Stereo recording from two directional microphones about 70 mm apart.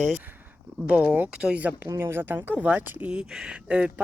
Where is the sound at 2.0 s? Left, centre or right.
Right.